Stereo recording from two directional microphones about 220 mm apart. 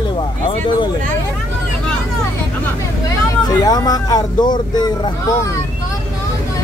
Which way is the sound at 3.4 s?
15° left (ahead or behind).